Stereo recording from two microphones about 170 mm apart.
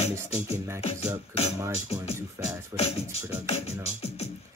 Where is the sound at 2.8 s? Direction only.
40° left (ahead or behind).